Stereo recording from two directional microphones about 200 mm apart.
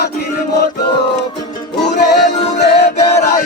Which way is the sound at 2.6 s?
55° left (ahead or behind).